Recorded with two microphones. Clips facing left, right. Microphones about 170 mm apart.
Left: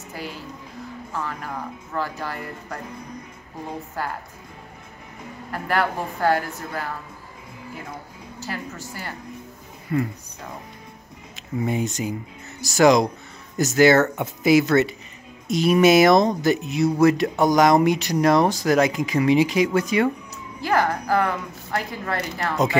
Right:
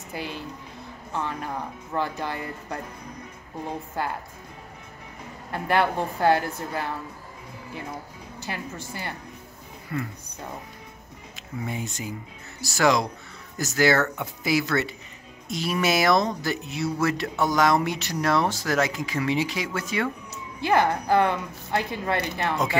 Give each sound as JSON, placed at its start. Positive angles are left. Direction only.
{"t": 0.1, "sound": "a woman's voice", "side_deg": -20}
{"t": 5.5, "sound": "a woman's voice", "side_deg": -20}
{"t": 8.5, "sound": "a woman's voice", "side_deg": -25}
{"t": 9.9, "sound": "speech", "side_deg": 25}
{"t": 11.6, "sound": "speech", "side_deg": 20}
{"t": 20.6, "sound": "a woman's voice", "side_deg": -20}